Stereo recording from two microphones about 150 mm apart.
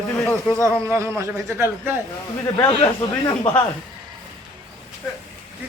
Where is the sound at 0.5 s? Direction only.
20° right (ahead or behind).